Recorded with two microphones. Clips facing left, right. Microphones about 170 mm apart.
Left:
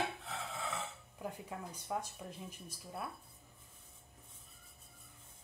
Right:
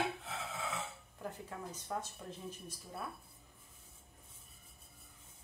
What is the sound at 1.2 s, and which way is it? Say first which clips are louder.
Speech: left 1 dB; 10° left (ahead or behind).